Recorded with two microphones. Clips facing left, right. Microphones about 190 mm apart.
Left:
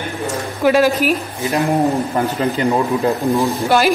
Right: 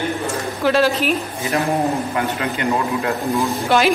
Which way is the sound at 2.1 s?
35° left (ahead or behind).